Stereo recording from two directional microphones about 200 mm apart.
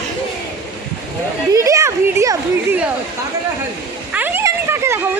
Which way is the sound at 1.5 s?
15° right (ahead or behind).